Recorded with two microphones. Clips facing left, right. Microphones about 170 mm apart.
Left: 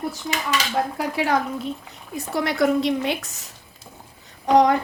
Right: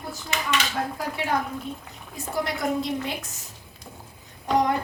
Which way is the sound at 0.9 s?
90° left.